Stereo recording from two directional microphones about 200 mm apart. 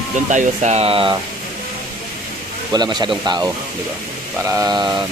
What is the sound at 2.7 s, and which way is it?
Speech, 20° right (ahead or behind).